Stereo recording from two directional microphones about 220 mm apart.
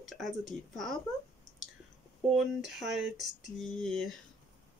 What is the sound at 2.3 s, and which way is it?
Speech, centre (ahead or behind).